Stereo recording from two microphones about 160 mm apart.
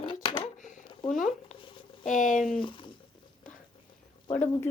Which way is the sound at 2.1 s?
55° left (ahead or behind).